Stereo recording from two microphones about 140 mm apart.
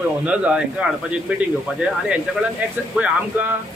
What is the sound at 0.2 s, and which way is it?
Speech, 10° right (ahead or behind).